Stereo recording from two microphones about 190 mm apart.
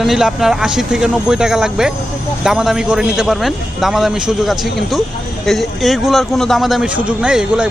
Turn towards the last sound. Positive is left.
turn(degrees=-5)  # may be behind; listen again after turning